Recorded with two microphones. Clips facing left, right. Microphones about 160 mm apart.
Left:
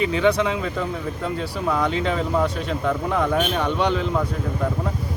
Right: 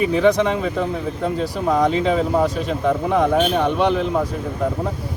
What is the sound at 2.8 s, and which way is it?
Speech, 15° right (ahead or behind).